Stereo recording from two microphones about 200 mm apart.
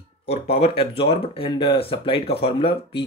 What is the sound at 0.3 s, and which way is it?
Speech, 30° left (ahead or behind).